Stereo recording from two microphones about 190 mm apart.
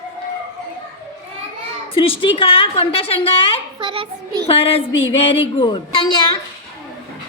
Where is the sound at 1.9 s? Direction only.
30° left (ahead or behind).